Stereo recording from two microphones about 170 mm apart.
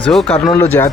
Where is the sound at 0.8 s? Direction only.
15° left (ahead or behind).